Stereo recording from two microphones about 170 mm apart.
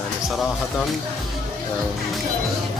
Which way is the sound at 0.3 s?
Centre (ahead or behind).